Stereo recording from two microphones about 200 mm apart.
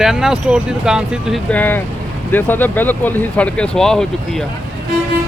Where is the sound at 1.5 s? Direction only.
10° left (ahead or behind).